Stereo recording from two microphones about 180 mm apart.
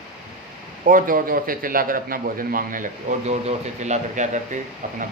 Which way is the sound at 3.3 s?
40° right (ahead or behind).